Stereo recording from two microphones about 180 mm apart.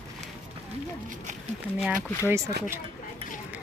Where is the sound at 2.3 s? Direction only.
15° right (ahead or behind).